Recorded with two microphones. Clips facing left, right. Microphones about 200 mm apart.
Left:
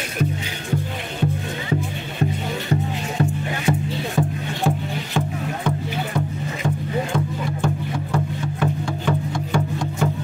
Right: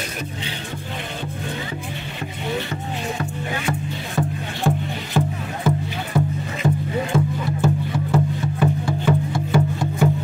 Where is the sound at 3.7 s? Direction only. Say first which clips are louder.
Left 6 dB; 25° left (ahead or behind).